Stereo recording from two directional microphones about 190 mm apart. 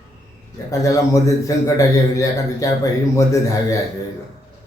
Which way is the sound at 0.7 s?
15° left (ahead or behind).